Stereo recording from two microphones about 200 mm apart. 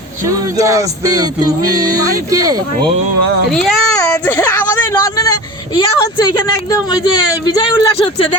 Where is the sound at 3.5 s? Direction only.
5° left (ahead or behind).